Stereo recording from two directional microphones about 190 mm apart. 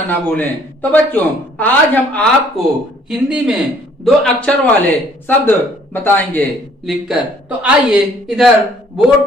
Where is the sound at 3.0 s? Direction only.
5° right (ahead or behind).